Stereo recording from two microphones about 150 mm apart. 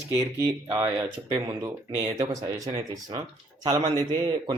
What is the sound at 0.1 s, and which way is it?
Speech, 20° right (ahead or behind).